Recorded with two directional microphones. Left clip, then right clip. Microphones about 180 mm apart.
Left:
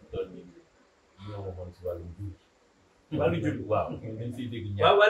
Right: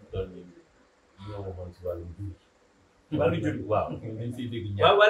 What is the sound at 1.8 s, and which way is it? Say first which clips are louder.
Speech: right 1 dB; 10° right (ahead or behind).